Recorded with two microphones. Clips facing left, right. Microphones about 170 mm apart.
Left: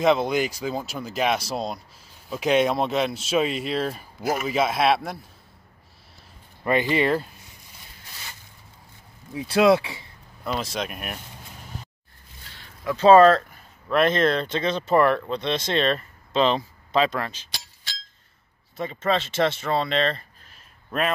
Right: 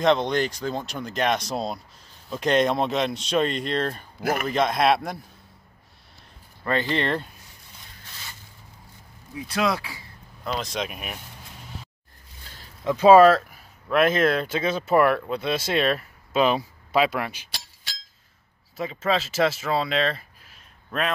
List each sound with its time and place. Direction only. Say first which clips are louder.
0.0 s speech: left 1 dB; 5° left (ahead or behind)
4.2 s a man's voice: even; 60° right (ahead or behind)
4.5 s speech: even; 5° left (ahead or behind)
6.6 s speech: left 3 dB; 15° left (ahead or behind)
9.3 s speech: left 7 dB; 25° left (ahead or behind)
10.4 s speech: left 1 dB; 5° left (ahead or behind)
12.8 s speech: even; 10° right (ahead or behind)
18.8 s speech: even; centre (ahead or behind)